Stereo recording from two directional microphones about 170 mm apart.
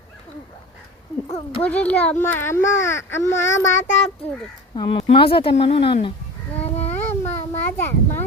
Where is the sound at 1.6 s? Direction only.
10° left (ahead or behind).